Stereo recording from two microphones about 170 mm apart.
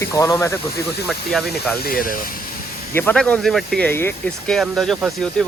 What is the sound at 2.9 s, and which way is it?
Speech, 10° left (ahead or behind).